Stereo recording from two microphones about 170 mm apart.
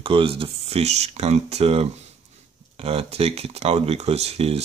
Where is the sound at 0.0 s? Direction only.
30° right (ahead or behind).